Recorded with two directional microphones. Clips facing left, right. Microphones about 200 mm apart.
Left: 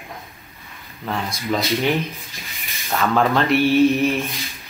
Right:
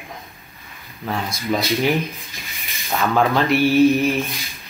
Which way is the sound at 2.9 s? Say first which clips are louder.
Even; 5° right (ahead or behind).